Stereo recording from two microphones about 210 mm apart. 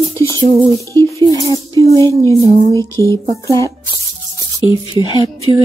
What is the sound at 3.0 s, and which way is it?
Music, 15° right (ahead or behind).